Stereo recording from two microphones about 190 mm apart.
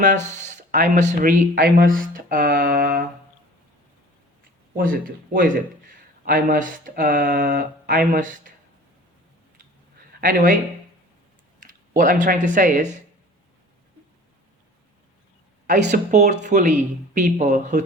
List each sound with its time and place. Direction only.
0.0 s speech: 40° right (ahead or behind)
4.7 s speech: 45° right (ahead or behind)
10.2 s speech: 50° right (ahead or behind)
11.6 s speech: 45° right (ahead or behind)
15.6 s speech: 40° right (ahead or behind)